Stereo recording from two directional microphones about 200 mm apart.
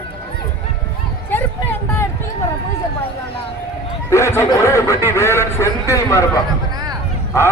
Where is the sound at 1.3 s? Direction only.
10° left (ahead or behind).